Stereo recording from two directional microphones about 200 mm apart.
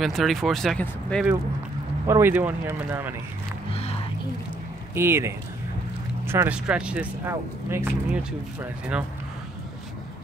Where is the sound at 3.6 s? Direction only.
30° left (ahead or behind).